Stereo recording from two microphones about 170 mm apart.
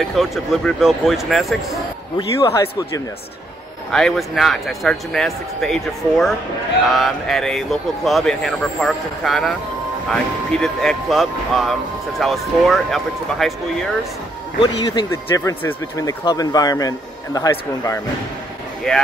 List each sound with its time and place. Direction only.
0.1 s speech: centre (ahead or behind)
2.1 s speech: 25° left (ahead or behind)
3.9 s speech: centre (ahead or behind)
10.5 s speech: 5° left (ahead or behind)
15.0 s speech: 15° left (ahead or behind)
18.9 s speech: 5° left (ahead or behind)